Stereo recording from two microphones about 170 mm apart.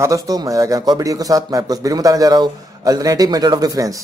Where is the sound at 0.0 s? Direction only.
20° right (ahead or behind).